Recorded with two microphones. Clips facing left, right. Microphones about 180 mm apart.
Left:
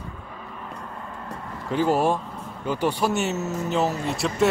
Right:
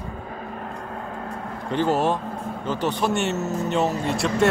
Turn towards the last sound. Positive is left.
turn(degrees=0)  # may be behind; listen again after turning